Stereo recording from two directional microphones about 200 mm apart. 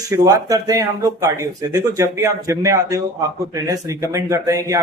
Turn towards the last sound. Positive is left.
turn(degrees=-15)  # may be behind; listen again after turning